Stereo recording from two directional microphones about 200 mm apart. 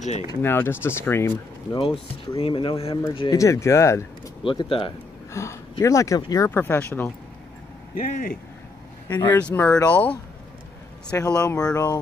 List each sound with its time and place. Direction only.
0.4 s speech: 10° left (ahead or behind)
2.3 s speech: 25° left (ahead or behind)
4.4 s speech: 25° left (ahead or behind)
5.3 s speech: 15° left (ahead or behind)
7.9 s speech: 40° left (ahead or behind)
9.1 s speech: 10° left (ahead or behind)
11.7 s speech: 15° left (ahead or behind)